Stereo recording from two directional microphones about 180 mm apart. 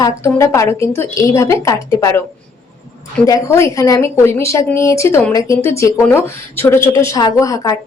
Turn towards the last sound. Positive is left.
turn(degrees=20)  # may be behind; listen again after turning